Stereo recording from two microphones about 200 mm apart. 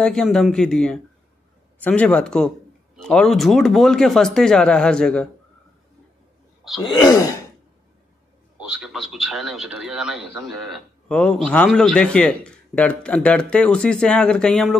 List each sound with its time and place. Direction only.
0.0 s a man's voice: 5° left (ahead or behind)
6.6 s a sound: centre (ahead or behind)
8.5 s a man's voice: 5° right (ahead or behind)